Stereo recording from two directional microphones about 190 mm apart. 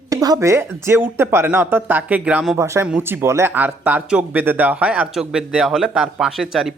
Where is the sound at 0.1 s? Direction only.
20° right (ahead or behind).